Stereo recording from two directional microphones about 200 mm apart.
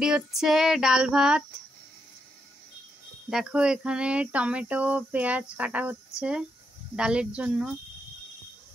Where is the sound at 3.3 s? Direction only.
5° right (ahead or behind).